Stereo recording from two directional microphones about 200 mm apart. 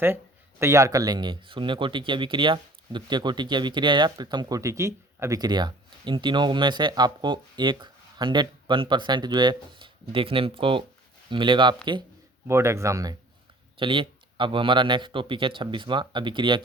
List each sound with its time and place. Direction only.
0.6 s speech: 15° right (ahead or behind)